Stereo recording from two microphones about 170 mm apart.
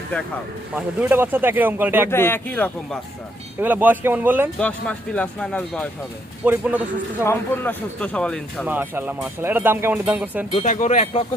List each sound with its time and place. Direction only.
0.8 s speech: 10° right (ahead or behind)
2.0 s speech: 15° left (ahead or behind)
3.6 s speech: 10° right (ahead or behind)
4.6 s speech: 10° left (ahead or behind)
6.4 s speech: 10° right (ahead or behind)
7.3 s speech: 10° left (ahead or behind)
8.6 s speech: 10° right (ahead or behind)
10.5 s speech: 45° left (ahead or behind)